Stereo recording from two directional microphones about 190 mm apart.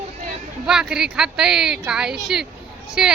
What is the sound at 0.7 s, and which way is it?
Speech, 5° right (ahead or behind).